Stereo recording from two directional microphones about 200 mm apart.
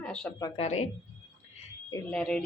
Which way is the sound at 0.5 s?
35° left (ahead or behind).